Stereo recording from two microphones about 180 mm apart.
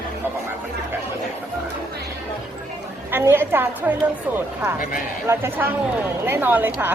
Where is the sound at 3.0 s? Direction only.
10° right (ahead or behind).